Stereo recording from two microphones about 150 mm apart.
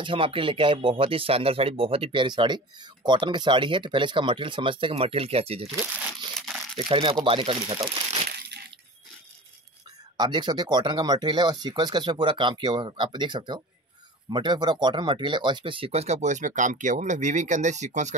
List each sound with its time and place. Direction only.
0.0 s speech: 35° right (ahead or behind)
6.4 s crumpling: centre (ahead or behind)
6.8 s speech: 35° right (ahead or behind)
10.1 s speech: 30° right (ahead or behind); by 18.1 s 50° right (ahead or behind)